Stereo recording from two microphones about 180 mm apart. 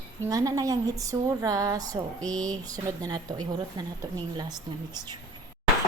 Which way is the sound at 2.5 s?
20° right (ahead or behind).